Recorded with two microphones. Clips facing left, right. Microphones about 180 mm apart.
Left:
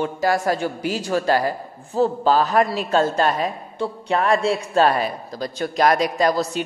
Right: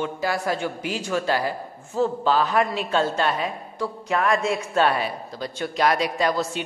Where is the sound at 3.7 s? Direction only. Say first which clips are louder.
Left 3 dB; 30° left (ahead or behind).